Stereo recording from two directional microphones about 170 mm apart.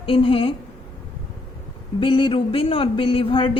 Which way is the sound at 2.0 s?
30° left (ahead or behind).